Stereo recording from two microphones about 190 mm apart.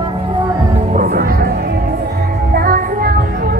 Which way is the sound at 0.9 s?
45° right (ahead or behind).